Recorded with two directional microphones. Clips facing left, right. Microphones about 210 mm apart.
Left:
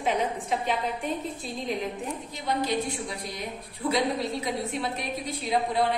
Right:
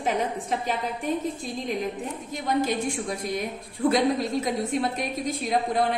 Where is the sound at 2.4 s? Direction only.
45° right (ahead or behind).